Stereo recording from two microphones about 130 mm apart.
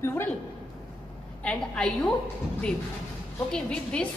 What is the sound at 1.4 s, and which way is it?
Speech, 5° left (ahead or behind).